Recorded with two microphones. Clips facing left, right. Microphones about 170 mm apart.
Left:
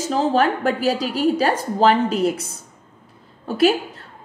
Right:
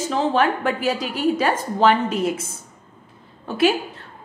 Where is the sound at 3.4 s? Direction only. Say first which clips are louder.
Left 2 dB; 40° left (ahead or behind).